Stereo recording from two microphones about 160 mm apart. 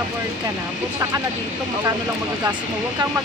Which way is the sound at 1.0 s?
20° right (ahead or behind).